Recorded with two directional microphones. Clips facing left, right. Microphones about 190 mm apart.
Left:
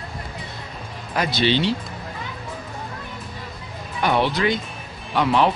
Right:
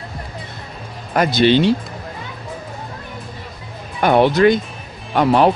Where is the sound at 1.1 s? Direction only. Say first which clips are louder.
Right 7 dB; 50° right (ahead or behind).